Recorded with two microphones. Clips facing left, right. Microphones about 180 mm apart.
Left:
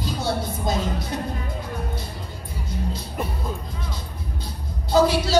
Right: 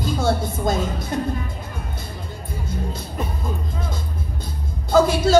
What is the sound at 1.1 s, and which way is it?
Music, 50° right (ahead or behind).